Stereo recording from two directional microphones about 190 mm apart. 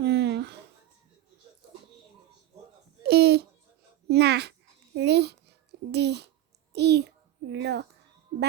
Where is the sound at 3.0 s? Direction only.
55° right (ahead or behind).